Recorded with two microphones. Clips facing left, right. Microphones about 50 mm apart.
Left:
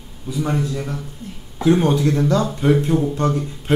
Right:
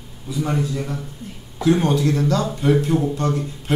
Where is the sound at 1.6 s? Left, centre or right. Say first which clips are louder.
Left 2 dB; left.